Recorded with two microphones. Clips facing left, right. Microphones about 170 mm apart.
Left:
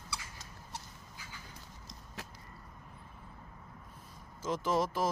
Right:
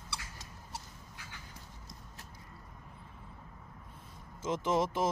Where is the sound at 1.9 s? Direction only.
90° left.